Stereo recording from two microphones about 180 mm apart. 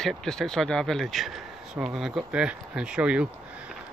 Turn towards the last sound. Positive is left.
turn(degrees=-5)  # may be behind; listen again after turning